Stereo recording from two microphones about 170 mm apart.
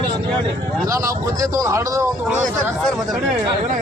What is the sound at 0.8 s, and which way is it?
A man's voice, 20° right (ahead or behind).